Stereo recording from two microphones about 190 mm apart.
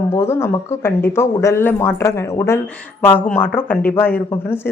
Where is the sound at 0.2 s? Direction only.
15° left (ahead or behind).